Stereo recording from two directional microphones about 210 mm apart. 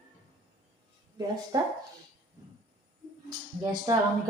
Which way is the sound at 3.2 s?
15° right (ahead or behind).